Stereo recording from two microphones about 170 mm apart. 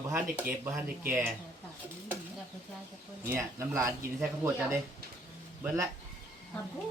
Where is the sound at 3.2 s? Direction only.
15° right (ahead or behind).